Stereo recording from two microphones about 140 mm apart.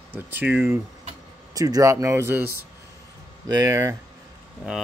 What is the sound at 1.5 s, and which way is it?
Speech, 25° right (ahead or behind).